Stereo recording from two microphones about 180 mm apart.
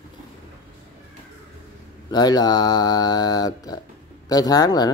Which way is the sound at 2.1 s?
20° left (ahead or behind).